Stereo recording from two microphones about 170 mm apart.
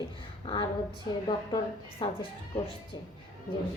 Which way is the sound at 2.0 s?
30° left (ahead or behind).